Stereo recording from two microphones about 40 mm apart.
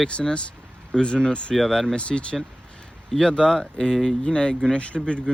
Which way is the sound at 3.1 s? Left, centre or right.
Centre.